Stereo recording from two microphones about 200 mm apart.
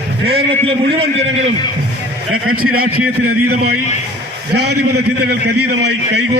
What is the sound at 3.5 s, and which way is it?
Speech, 50° right (ahead or behind).